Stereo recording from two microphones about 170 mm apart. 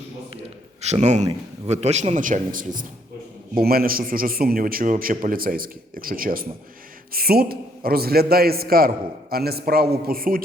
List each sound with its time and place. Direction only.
0.8 s a man's voice: 40° right (ahead or behind); by 10.4 s 60° right (ahead or behind)